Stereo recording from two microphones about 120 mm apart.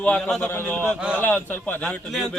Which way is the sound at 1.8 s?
5° left (ahead or behind).